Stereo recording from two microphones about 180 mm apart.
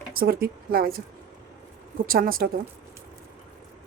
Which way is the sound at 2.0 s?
55° right (ahead or behind).